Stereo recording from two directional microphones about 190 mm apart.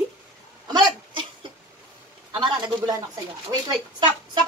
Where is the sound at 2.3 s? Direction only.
20° right (ahead or behind).